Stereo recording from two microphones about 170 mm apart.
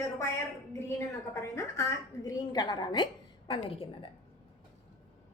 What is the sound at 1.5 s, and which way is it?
A woman's voice, 20° left (ahead or behind).